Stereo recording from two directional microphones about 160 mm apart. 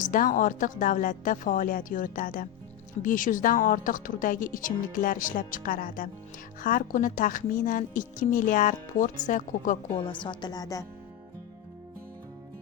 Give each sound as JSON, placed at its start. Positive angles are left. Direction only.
{"t": 0.0, "sound": "a woman's voice", "side_deg": 55}
{"t": 10.1, "sound": "speech", "side_deg": 30}